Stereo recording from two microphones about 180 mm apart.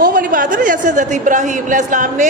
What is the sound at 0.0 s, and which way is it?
A woman's voice, 50° right (ahead or behind).